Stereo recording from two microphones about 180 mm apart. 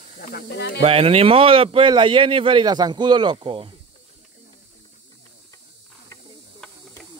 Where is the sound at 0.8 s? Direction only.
30° right (ahead or behind).